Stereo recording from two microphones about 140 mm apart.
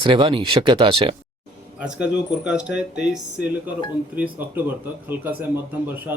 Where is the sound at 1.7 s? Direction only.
5° right (ahead or behind).